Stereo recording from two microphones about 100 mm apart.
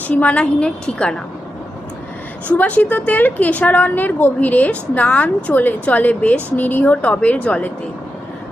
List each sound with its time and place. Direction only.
0.1 s a woman's voice: 15° left (ahead or behind)
2.5 s a woman's voice: 15° left (ahead or behind)